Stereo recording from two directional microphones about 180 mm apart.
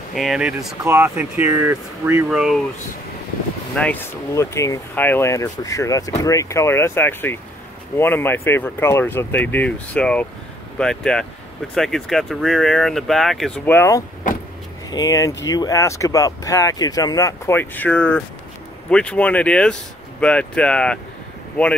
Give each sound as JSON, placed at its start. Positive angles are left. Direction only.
{"t": 0.1, "sound": "speech", "side_deg": 0}
{"t": 3.7, "sound": "speech", "side_deg": 5}
{"t": 4.3, "sound": "speech", "side_deg": 15}
{"t": 13.7, "sound": "speech", "side_deg": 15}